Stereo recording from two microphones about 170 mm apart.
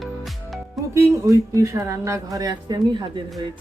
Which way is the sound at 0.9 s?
20° right (ahead or behind).